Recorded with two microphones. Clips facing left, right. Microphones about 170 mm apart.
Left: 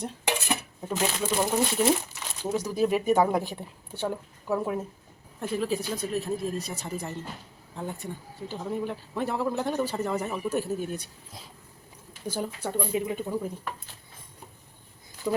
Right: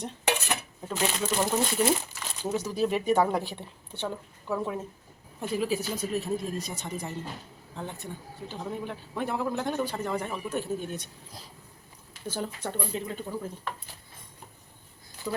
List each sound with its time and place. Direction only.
0.0 s dishes: 10° left (ahead or behind)
1.5 s a man's voice: centre (ahead or behind)
2.4 s speech: 10° left (ahead or behind)
5.4 s a man's voice: centre (ahead or behind)
15.3 s speech: 20° left (ahead or behind)